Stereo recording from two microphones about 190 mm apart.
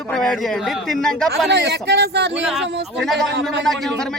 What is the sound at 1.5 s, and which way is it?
Speech, 60° right (ahead or behind).